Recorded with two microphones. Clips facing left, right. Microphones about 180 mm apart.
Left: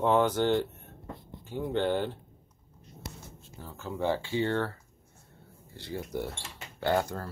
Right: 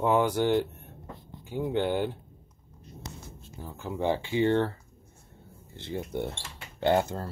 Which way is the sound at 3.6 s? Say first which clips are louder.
Right 1 dB; 15° right (ahead or behind).